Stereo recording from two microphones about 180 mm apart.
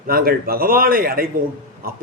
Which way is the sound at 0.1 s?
55° right (ahead or behind).